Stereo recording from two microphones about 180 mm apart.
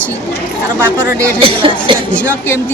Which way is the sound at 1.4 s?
30° right (ahead or behind).